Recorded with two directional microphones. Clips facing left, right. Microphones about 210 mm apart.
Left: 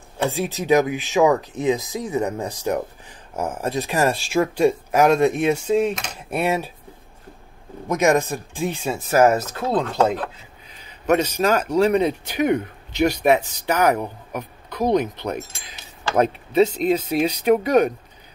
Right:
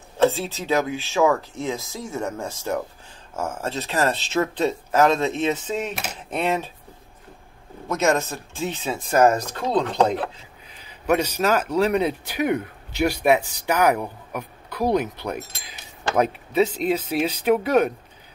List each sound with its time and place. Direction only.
0.2 s speech: 15° left (ahead or behind)
7.9 s speech: 15° left (ahead or behind)
10.9 s a man's voice: 10° right (ahead or behind)